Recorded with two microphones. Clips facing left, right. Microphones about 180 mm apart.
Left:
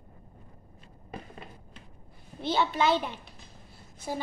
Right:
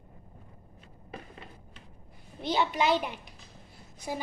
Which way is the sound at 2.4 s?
15° right (ahead or behind).